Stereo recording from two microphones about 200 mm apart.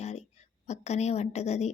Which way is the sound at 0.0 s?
35° left (ahead or behind).